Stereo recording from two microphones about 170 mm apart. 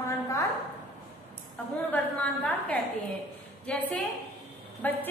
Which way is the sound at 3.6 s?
10° left (ahead or behind).